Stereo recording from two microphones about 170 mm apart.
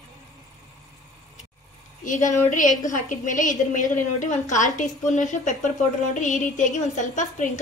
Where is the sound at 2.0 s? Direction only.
50° left (ahead or behind).